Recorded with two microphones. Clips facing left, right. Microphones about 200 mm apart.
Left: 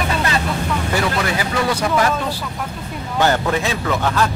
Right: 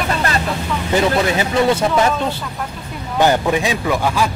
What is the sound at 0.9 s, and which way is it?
Speech, 20° right (ahead or behind).